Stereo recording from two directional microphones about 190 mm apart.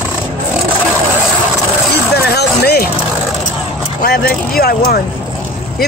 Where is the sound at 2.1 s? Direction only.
60° left (ahead or behind).